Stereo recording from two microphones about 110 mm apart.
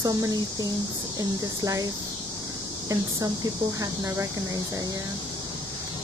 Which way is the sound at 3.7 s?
30° right (ahead or behind).